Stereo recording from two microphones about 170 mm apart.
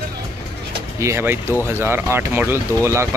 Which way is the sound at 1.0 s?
15° right (ahead or behind).